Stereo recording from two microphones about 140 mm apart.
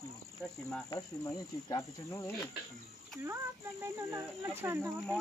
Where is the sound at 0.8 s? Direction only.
25° left (ahead or behind).